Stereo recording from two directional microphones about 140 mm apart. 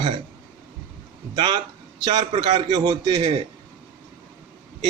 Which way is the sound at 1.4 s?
35° right (ahead or behind).